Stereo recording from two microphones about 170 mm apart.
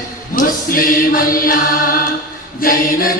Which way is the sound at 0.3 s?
55° left (ahead or behind).